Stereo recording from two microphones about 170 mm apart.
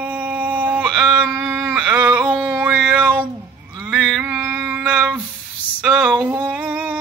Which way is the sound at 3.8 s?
5° right (ahead or behind).